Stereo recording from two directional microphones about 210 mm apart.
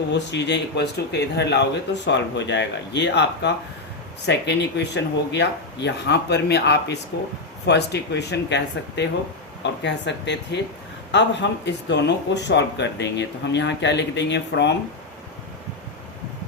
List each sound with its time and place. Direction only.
0.1 s speech: 55° left (ahead or behind)